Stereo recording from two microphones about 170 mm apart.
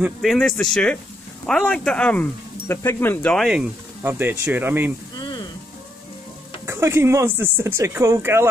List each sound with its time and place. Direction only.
0.0 s speech: centre (ahead or behind)
3.4 s speech: 5° right (ahead or behind)
5.1 s music: 25° left (ahead or behind)
6.6 s speech: 15° right (ahead or behind)